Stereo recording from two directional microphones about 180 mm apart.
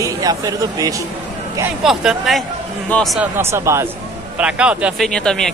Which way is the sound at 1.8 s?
Centre (ahead or behind).